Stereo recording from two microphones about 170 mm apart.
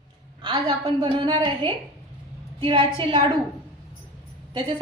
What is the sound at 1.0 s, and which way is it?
A woman's voice, 30° right (ahead or behind).